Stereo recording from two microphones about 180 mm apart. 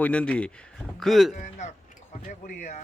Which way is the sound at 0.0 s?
5° left (ahead or behind).